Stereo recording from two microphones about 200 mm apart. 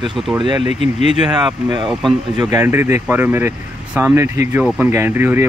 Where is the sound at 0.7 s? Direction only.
30° left (ahead or behind).